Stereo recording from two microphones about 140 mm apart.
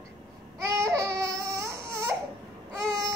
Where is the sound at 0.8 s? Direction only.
20° right (ahead or behind).